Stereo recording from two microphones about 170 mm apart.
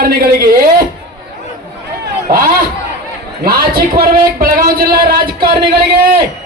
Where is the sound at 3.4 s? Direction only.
60° right (ahead or behind).